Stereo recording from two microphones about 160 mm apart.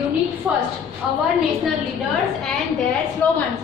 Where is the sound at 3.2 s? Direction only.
10° left (ahead or behind).